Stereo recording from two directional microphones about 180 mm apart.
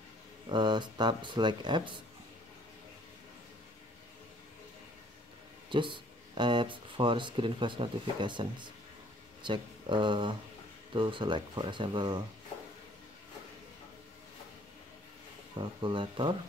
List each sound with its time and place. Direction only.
0.5 s speech: 25° right (ahead or behind)
5.7 s speech: 25° right (ahead or behind)
15.8 s speech: 25° right (ahead or behind)